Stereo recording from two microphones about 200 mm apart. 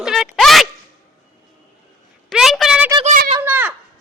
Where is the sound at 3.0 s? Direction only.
40° right (ahead or behind).